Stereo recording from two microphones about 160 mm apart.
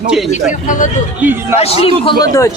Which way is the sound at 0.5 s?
55° left (ahead or behind).